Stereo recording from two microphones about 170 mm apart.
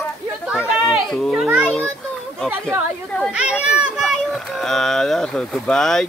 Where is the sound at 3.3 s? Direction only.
5° right (ahead or behind).